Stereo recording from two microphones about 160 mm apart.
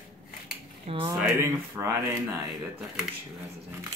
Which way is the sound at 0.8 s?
35° right (ahead or behind).